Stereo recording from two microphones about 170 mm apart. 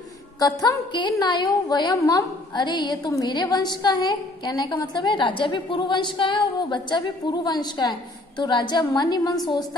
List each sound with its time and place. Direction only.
0.4 s a woman's voice: 25° left (ahead or behind)